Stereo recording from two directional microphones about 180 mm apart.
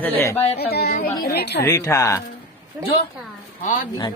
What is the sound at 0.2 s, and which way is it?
Speech, 15° left (ahead or behind).